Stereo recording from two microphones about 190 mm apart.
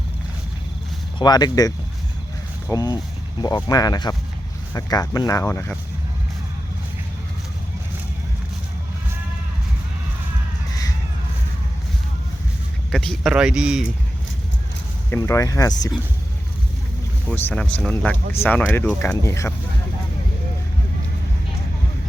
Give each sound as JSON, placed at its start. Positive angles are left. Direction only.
{"t": 1.2, "sound": "speech", "side_deg": 20}
{"t": 12.9, "sound": "speech", "side_deg": 0}
{"t": 15.1, "sound": "speech", "side_deg": 15}
{"t": 17.2, "sound": "speech", "side_deg": 5}